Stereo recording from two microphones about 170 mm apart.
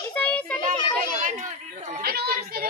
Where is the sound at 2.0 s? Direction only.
65° right (ahead or behind).